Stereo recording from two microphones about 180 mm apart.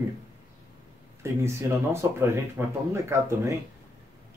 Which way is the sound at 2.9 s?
15° right (ahead or behind).